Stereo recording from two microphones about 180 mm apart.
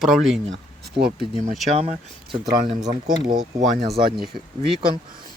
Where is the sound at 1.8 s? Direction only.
35° right (ahead or behind).